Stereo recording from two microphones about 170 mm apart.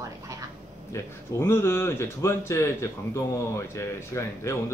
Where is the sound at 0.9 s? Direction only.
15° left (ahead or behind).